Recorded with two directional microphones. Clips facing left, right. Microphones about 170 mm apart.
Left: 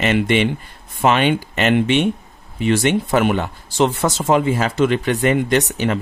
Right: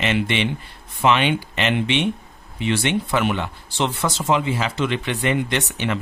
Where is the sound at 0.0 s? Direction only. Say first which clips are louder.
Left 5 dB; 45° left (ahead or behind).